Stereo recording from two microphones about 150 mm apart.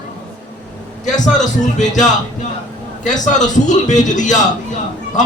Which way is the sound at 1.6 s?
55° left (ahead or behind).